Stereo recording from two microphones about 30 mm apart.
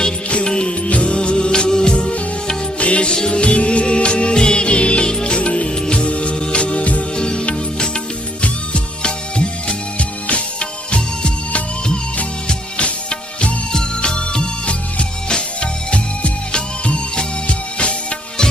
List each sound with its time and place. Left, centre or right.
0.4 s music: left
0.8 s music: left
2.7 s music: left
5.0 s music: left
5.6 s music: left
5.9 s music: left
9.0 s music: left
12.7 s music: left
13.7 s music: left